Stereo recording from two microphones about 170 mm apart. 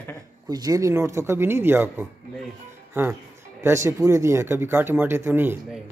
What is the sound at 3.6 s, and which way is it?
Speech, 15° right (ahead or behind).